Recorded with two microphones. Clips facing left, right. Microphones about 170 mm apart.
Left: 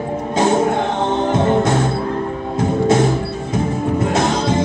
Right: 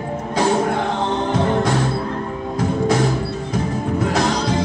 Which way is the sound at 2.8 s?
20° left (ahead or behind).